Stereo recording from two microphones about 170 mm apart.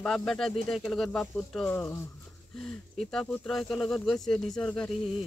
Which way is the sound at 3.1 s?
5° left (ahead or behind).